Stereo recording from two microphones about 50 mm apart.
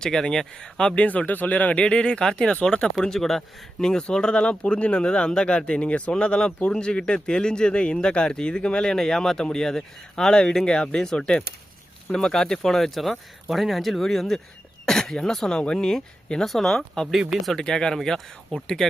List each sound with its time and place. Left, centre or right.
0.0 s speech: centre
0.9 s speech: left
1.8 s speech: centre
3.0 s speech: centre